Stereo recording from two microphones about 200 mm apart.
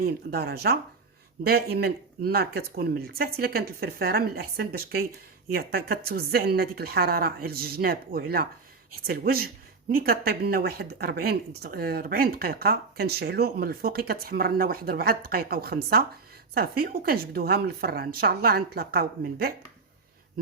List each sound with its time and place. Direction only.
0.0 s speech: 50° right (ahead or behind)